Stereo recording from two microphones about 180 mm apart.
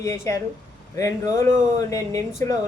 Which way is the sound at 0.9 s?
15° left (ahead or behind).